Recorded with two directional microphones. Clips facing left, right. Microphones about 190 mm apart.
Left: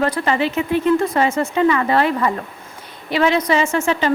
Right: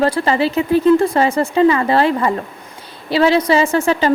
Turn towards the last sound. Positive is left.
turn(degrees=-35)  # may be behind; listen again after turning